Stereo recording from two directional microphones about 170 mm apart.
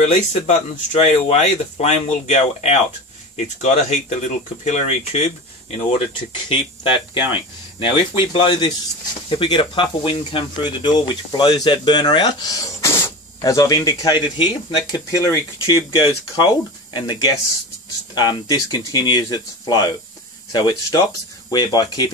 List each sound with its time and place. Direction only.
0.0 s speech: 45° left (ahead or behind); by 22.1 s 25° left (ahead or behind)